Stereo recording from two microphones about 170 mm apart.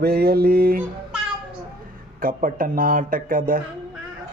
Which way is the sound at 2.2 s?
55° right (ahead or behind).